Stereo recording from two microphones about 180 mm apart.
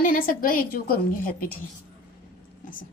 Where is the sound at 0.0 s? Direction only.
50° left (ahead or behind).